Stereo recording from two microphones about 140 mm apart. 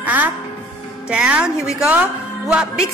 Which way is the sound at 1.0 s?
5° right (ahead or behind).